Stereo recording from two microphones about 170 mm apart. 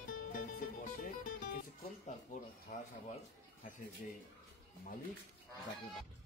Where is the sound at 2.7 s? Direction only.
50° left (ahead or behind).